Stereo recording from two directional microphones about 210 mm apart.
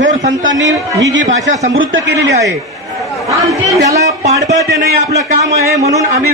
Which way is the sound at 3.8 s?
15° right (ahead or behind).